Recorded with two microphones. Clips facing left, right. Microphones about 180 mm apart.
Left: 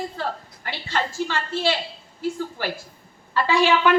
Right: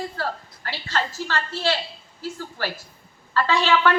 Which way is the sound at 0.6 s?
15° left (ahead or behind).